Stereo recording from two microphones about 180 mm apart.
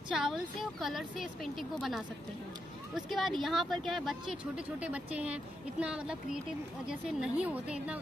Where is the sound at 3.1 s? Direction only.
Centre (ahead or behind).